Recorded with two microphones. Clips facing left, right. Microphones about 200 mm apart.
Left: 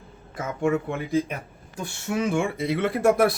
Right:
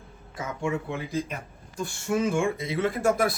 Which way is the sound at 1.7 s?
65° left (ahead or behind).